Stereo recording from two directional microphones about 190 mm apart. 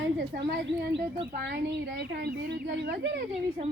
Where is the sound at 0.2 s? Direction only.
60° right (ahead or behind).